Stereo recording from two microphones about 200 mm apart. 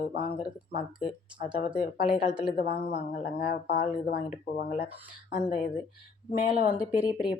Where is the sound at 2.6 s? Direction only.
35° left (ahead or behind).